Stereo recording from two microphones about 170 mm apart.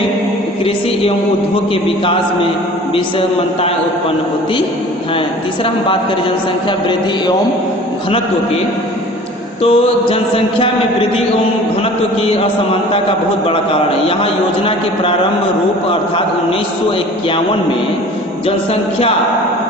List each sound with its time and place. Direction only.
2.9 s mantra: 35° left (ahead or behind)
6.7 s a man's voice: 30° left (ahead or behind)
9.6 s mantra: 35° left (ahead or behind)
18.4 s mantra: 35° left (ahead or behind)